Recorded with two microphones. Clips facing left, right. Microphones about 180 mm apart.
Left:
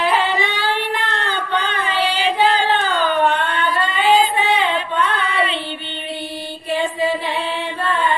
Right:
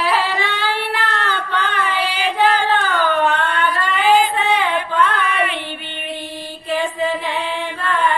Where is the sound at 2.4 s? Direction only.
20° left (ahead or behind).